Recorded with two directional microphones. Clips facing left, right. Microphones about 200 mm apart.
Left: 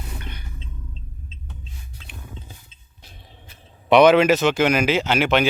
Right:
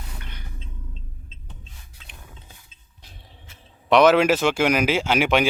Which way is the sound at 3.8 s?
Centre (ahead or behind).